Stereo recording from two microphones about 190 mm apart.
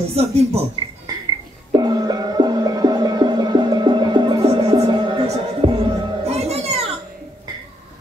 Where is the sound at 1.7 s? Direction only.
20° right (ahead or behind).